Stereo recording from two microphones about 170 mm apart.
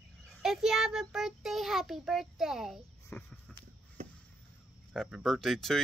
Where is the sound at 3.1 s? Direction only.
15° left (ahead or behind).